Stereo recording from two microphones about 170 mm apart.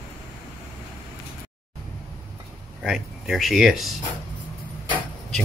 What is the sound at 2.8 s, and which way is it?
Speech, centre (ahead or behind).